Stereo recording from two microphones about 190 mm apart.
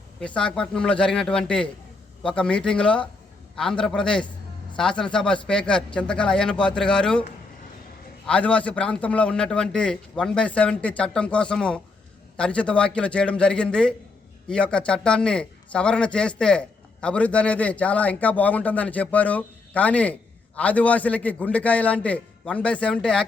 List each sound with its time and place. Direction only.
0.2 s a man's voice: 5° left (ahead or behind)
8.3 s a man's voice: 5° left (ahead or behind)